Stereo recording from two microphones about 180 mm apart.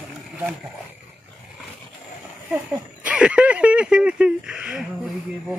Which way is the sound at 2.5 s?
10° right (ahead or behind).